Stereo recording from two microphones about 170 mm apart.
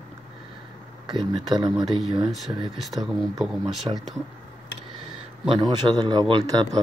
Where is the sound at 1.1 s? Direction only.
25° right (ahead or behind).